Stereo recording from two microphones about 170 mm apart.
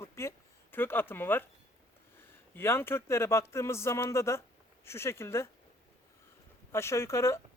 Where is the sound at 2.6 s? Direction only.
15° left (ahead or behind).